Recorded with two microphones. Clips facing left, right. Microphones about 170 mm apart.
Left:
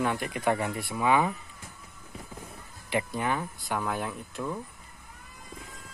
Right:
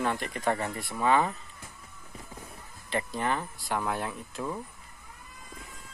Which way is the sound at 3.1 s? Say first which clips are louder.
Left 1 dB; 5° left (ahead or behind).